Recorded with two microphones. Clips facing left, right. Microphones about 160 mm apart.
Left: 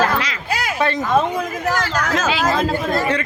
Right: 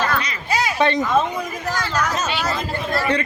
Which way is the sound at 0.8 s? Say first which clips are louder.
Right 2 dB; 5° left (ahead or behind).